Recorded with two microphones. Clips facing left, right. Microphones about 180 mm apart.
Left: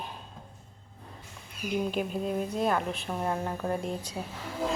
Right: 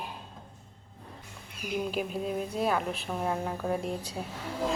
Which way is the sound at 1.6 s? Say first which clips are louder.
Left 2 dB; 5° right (ahead or behind).